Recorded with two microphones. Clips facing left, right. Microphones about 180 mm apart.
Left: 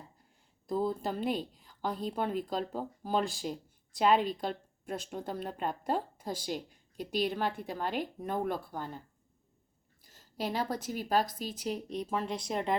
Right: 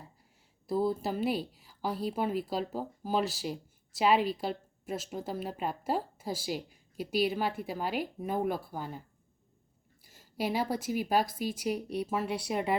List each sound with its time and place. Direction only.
0.7 s a woman's voice: 5° right (ahead or behind)